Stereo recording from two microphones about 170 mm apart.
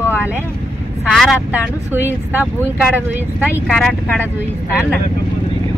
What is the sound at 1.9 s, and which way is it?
Speech, 10° right (ahead or behind).